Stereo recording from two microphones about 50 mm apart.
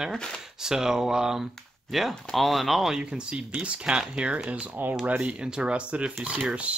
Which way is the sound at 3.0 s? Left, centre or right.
Right.